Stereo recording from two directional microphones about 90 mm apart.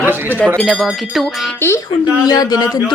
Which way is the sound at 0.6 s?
Centre (ahead or behind).